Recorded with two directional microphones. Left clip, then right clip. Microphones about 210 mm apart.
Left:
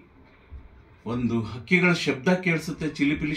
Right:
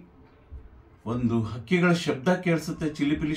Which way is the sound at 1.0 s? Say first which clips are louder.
Even; 20° right (ahead or behind).